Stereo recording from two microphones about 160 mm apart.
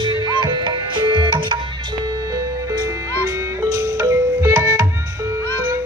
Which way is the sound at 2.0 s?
20° right (ahead or behind).